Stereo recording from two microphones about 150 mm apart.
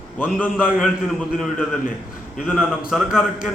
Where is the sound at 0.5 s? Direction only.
5° right (ahead or behind).